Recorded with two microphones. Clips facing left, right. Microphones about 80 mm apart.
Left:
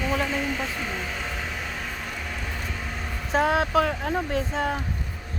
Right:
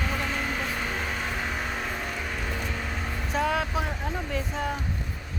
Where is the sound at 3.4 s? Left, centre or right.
Left.